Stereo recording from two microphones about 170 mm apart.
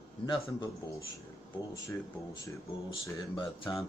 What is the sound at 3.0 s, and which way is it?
Speech, 25° left (ahead or behind).